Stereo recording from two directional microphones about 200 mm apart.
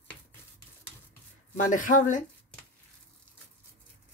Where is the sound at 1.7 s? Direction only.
40° left (ahead or behind).